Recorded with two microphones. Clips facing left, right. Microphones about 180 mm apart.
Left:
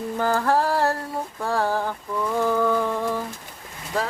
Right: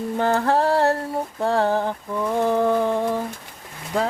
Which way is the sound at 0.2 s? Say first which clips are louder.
Right 2 dB; 25° right (ahead or behind).